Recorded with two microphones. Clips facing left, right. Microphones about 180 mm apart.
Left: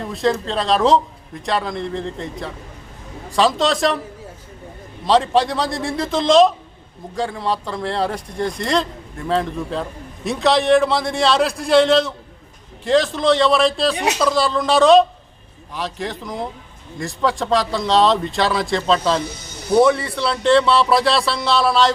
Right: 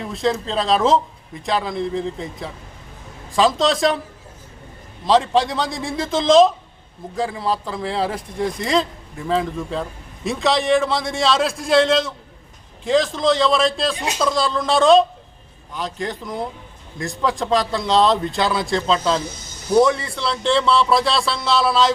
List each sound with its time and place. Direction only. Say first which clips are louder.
0.0 s speech: left 2 dB; centre (ahead or behind)
5.0 s speech: left 1 dB; centre (ahead or behind)
13.9 s a woman's voice: left 5 dB; 65° left (ahead or behind)
14.2 s speech: right 1 dB; centre (ahead or behind)
19.2 s snake: left 3 dB; 65° left (ahead or behind)
19.7 s speech: left 1 dB; centre (ahead or behind)